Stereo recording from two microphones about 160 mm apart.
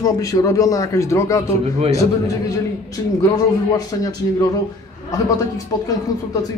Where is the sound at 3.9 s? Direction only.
20° left (ahead or behind).